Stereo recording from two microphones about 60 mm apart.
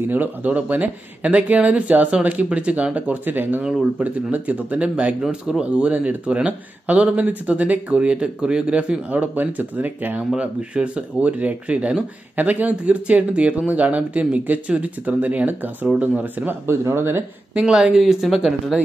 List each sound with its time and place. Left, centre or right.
0.1 s speech: right
16.6 s speech: right
17.6 s speech: centre